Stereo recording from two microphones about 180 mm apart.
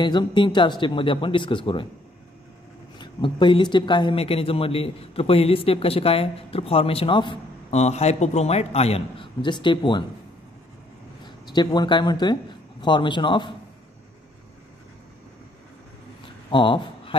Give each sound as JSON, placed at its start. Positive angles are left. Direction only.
{"t": 0.0, "sound": "speech", "side_deg": 25}
{"t": 3.0, "sound": "speech", "side_deg": 25}
{"t": 11.2, "sound": "speech", "side_deg": 25}
{"t": 16.4, "sound": "speech", "side_deg": 25}